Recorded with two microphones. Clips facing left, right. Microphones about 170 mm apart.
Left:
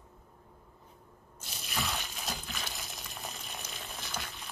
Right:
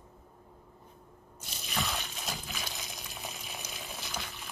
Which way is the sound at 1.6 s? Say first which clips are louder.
Right 1 dB; centre (ahead or behind).